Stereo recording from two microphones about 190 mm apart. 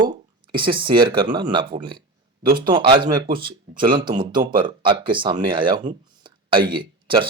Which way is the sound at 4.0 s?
25° right (ahead or behind).